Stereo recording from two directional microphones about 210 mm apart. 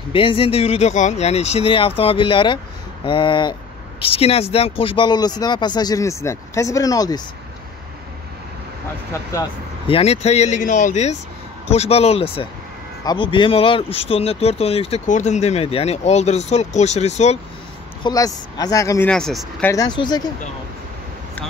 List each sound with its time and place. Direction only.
0.1 s a man's voice: 25° left (ahead or behind)
9.8 s a man's voice: 30° left (ahead or behind)
18.0 s speech: 15° left (ahead or behind)
19.0 s speech: 5° left (ahead or behind)
19.7 s a man's voice: 20° left (ahead or behind)